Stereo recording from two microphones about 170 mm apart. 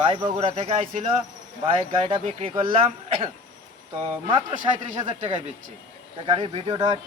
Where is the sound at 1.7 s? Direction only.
30° right (ahead or behind).